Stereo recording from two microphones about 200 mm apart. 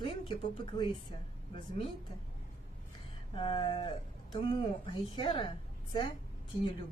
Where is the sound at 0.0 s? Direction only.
25° left (ahead or behind).